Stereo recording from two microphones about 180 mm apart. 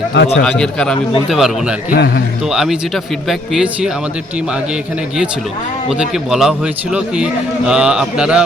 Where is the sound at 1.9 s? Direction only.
65° left (ahead or behind).